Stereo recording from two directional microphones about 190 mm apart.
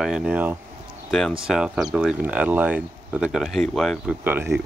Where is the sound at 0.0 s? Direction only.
5° right (ahead or behind).